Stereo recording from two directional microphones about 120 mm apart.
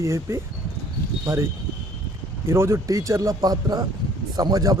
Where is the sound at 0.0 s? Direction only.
25° right (ahead or behind).